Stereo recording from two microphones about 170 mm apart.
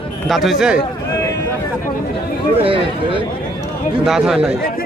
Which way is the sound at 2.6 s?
30° right (ahead or behind).